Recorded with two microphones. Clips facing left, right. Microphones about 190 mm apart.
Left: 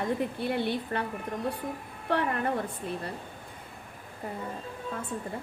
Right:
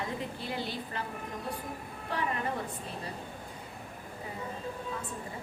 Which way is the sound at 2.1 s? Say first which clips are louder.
Left 7 dB; 65° left (ahead or behind).